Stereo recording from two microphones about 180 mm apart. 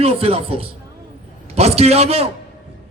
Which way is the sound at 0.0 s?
30° right (ahead or behind).